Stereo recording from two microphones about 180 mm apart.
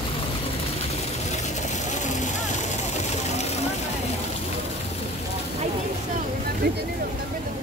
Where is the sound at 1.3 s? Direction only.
40° left (ahead or behind).